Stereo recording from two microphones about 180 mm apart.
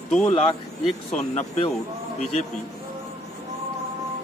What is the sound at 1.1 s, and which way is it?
Speech, 40° left (ahead or behind).